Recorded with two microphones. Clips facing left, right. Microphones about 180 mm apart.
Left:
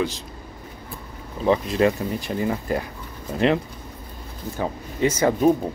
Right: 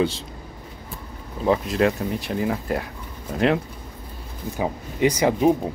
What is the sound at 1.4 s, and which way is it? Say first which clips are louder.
Speech: left 1 dB; centre (ahead or behind).